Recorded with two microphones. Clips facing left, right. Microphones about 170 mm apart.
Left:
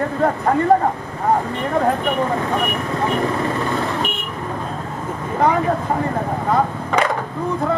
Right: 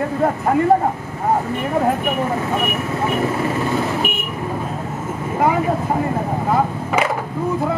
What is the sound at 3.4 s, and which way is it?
Vehicle, 10° right (ahead or behind).